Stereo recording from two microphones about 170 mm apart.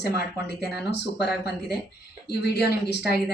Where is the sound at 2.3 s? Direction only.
75° left (ahead or behind).